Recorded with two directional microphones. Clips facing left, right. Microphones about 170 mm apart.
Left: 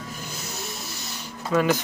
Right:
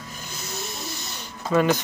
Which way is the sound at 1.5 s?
Centre (ahead or behind).